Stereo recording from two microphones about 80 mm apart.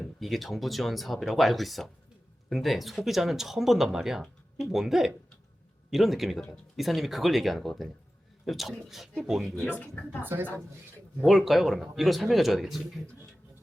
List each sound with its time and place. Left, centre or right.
0.0 s speech: centre
9.7 s speech: centre
10.2 s a woman's voice: right
11.3 s speech: centre